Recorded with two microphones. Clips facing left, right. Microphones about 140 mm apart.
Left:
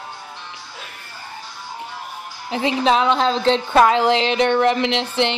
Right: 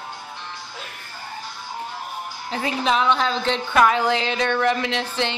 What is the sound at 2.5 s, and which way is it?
A woman's voice, 30° left (ahead or behind).